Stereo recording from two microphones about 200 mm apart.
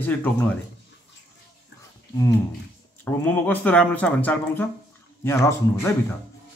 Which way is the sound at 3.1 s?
10° left (ahead or behind).